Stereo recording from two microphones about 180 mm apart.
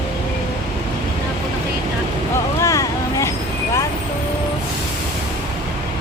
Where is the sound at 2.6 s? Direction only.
20° left (ahead or behind).